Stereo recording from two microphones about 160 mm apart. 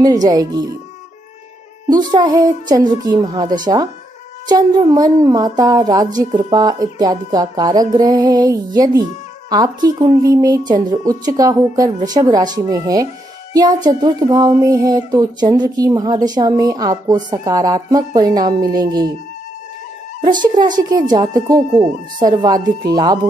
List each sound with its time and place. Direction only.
0.0 s speech: 25° right (ahead or behind)
1.9 s speech: 25° right (ahead or behind)
20.2 s speech: 30° right (ahead or behind)